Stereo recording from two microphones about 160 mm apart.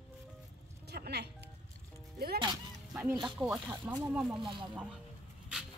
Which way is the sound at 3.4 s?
5° right (ahead or behind).